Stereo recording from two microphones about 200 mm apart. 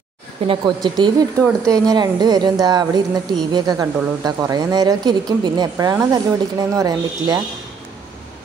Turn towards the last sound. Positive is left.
turn(degrees=-20)  # may be behind; listen again after turning